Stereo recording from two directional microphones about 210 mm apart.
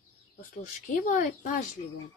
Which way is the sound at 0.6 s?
40° left (ahead or behind).